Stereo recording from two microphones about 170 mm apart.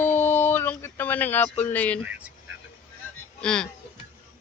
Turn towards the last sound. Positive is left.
turn(degrees=5)  # may be behind; listen again after turning